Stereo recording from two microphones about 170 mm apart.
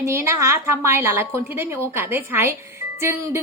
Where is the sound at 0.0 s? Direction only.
15° right (ahead or behind).